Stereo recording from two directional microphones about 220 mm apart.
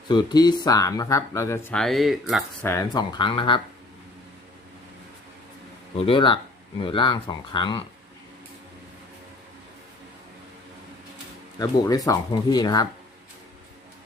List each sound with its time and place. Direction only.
0.1 s speech: 20° left (ahead or behind); by 2.6 s centre (ahead or behind)
2.6 s speech: 15° left (ahead or behind)
6.1 s speech: 20° left (ahead or behind)
11.6 s speech: 15° left (ahead or behind)